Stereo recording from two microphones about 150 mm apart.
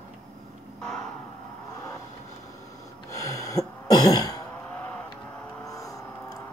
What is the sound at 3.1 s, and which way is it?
Throat clearing, 25° left (ahead or behind).